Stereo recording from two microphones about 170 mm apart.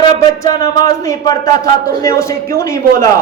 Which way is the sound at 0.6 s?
20° left (ahead or behind).